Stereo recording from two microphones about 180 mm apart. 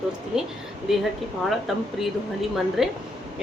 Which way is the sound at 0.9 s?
Centre (ahead or behind).